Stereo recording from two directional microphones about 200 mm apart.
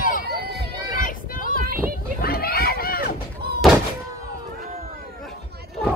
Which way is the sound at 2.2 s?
50° left (ahead or behind).